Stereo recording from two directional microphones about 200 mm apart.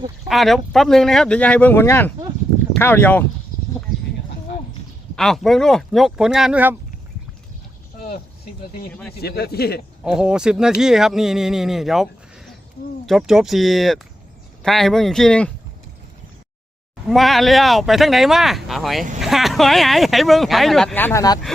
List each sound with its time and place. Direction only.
0.3 s speech: centre (ahead or behind)
5.1 s speech: centre (ahead or behind)
7.9 s a sound: 45° left (ahead or behind)
8.9 s speech: 5° left (ahead or behind)
9.2 s speech: 50° left (ahead or behind)
10.0 s speech: 5° right (ahead or behind)
13.1 s speech: centre (ahead or behind)
17.1 s speech: centre (ahead or behind)